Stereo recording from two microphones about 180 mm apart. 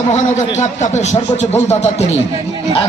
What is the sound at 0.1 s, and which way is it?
A man's voice, 40° left (ahead or behind).